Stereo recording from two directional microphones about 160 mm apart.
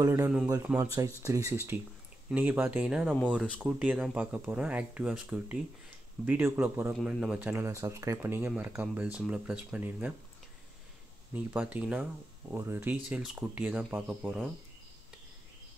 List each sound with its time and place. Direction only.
0.0 s speech: 15° right (ahead or behind)
3.4 s speech: 5° left (ahead or behind)
3.8 s speech: 10° right (ahead or behind)
11.3 s speech: 10° right (ahead or behind)